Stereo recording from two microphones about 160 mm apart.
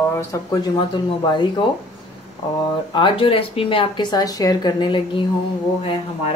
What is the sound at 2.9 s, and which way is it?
Speech, 35° left (ahead or behind).